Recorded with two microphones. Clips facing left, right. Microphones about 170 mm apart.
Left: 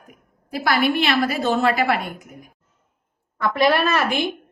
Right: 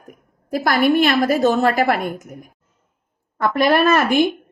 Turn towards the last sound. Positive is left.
turn(degrees=-50)  # may be behind; listen again after turning